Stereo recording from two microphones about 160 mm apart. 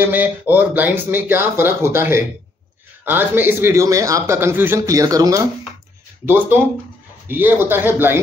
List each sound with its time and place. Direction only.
0.0 s a man's voice: 10° right (ahead or behind)